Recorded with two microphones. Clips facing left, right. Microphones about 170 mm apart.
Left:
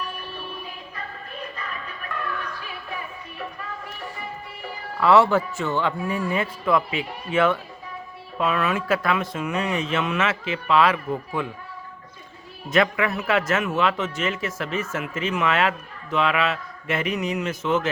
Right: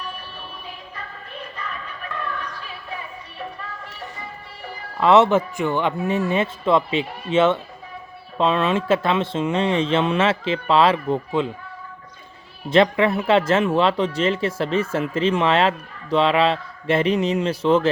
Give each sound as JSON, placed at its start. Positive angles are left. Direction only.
{"t": 4.9, "sound": "speech", "side_deg": -20}
{"t": 12.7, "sound": "speech", "side_deg": -30}